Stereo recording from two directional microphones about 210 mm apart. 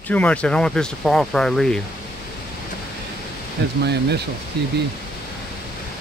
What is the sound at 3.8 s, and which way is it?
Speech, 50° right (ahead or behind).